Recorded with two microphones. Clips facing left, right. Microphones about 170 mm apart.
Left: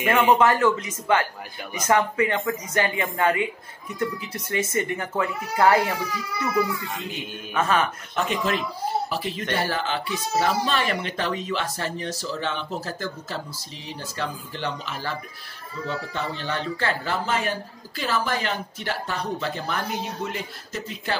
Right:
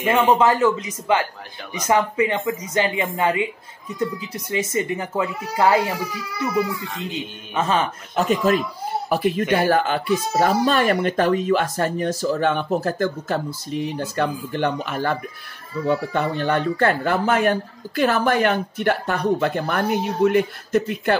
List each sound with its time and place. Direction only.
0.0 s speech: 15° right (ahead or behind)
7.5 s speech: 25° right (ahead or behind)
8.2 s speech: 40° right (ahead or behind)